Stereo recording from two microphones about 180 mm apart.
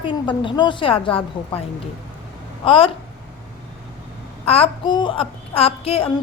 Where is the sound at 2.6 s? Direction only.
30° left (ahead or behind).